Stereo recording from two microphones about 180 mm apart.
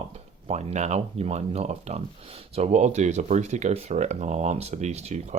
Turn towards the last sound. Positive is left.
turn(degrees=-35)  # may be behind; listen again after turning